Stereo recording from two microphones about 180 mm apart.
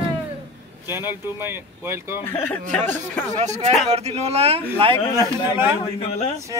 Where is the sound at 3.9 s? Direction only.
35° right (ahead or behind).